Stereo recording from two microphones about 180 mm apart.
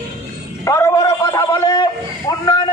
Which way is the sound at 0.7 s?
15° left (ahead or behind).